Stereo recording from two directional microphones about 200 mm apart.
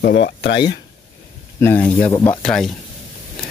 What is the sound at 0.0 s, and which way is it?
Speech, 60° left (ahead or behind).